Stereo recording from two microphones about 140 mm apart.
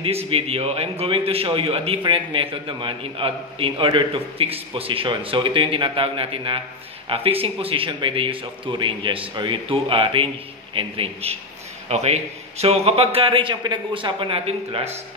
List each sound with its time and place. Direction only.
0.0 s a man's voice: 45° right (ahead or behind)